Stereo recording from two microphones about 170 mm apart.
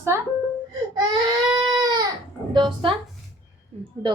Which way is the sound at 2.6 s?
30° right (ahead or behind).